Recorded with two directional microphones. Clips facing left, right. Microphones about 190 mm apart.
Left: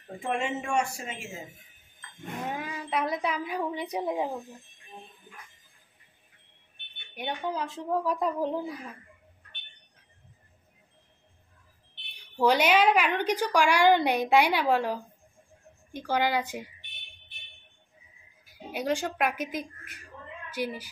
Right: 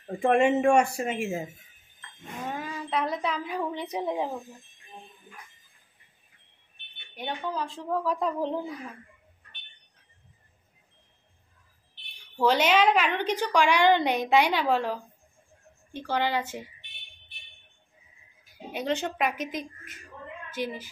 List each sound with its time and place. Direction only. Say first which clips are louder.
0.2 s speech: right 10 dB; 60° right (ahead or behind)
2.5 s a woman's voice: right 2 dB; 10° left (ahead or behind)
7.2 s a woman's voice: even; 15° left (ahead or behind)
12.4 s a woman's voice: even; 15° left (ahead or behind)
18.7 s a woman's voice: even; 10° left (ahead or behind)